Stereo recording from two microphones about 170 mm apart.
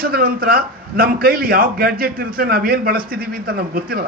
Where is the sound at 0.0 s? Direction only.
60° right (ahead or behind).